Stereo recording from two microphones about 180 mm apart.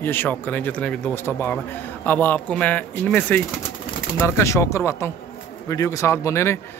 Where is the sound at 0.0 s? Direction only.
10° left (ahead or behind).